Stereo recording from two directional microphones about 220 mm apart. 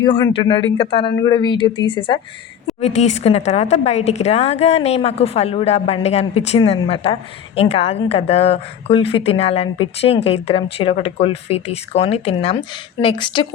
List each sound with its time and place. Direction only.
0.0 s a woman's voice: 20° left (ahead or behind)